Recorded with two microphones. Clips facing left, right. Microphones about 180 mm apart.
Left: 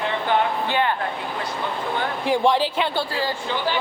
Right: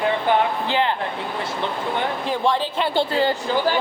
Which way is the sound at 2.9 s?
25° right (ahead or behind).